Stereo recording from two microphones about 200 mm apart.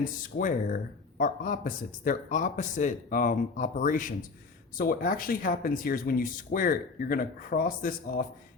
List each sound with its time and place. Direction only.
0.0 s speech: 40° left (ahead or behind)